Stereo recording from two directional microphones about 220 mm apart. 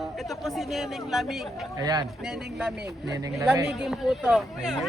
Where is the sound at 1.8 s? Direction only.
15° right (ahead or behind).